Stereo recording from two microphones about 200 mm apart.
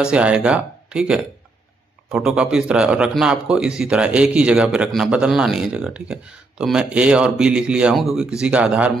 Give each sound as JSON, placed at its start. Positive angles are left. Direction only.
{"t": 0.0, "sound": "a man's voice", "side_deg": -5}